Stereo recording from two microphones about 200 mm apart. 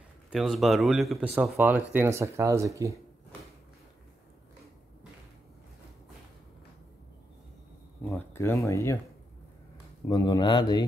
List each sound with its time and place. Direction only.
0.3 s speech: centre (ahead or behind)
8.0 s speech: 10° left (ahead or behind)
10.0 s speech: 20° left (ahead or behind)